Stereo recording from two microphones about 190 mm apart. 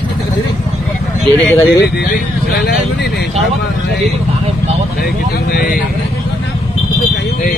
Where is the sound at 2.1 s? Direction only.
55° left (ahead or behind).